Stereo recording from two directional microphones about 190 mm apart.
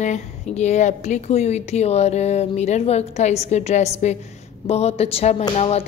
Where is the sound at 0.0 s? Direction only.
40° left (ahead or behind).